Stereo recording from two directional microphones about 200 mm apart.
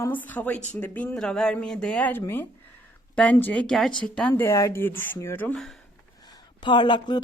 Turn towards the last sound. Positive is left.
turn(degrees=20)  # may be behind; listen again after turning